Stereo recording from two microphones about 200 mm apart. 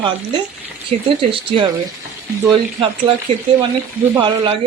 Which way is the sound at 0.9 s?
25° right (ahead or behind).